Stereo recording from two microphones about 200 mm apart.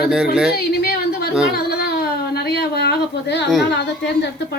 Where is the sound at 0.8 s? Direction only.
50° left (ahead or behind).